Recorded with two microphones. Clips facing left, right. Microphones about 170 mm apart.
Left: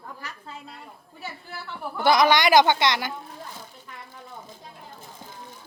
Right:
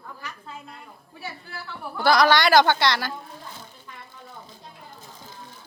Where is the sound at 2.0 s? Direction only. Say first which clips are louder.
Even; 20° left (ahead or behind).